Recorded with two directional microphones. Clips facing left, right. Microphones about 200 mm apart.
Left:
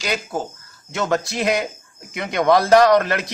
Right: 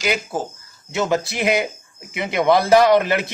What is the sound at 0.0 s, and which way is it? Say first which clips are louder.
Speech: right 2 dB; 5° right (ahead or behind).